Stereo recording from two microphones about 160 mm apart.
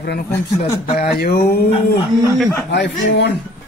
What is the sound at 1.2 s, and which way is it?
Mantra, 75° left (ahead or behind).